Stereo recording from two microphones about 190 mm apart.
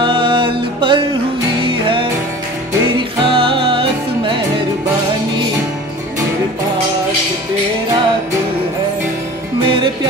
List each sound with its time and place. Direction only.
0.0 s music: 25° right (ahead or behind)
3.3 s music: 25° right (ahead or behind)